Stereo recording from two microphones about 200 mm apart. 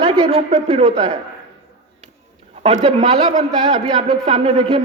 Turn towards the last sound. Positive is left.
turn(degrees=-30)  # may be behind; listen again after turning